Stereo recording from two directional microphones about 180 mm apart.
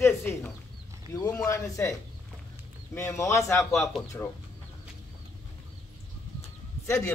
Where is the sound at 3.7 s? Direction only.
Centre (ahead or behind).